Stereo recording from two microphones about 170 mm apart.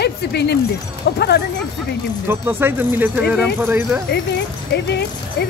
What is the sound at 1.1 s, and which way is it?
Speech, 75° left (ahead or behind).